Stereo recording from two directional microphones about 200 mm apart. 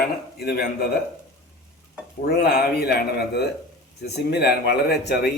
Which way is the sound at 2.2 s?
50° left (ahead or behind).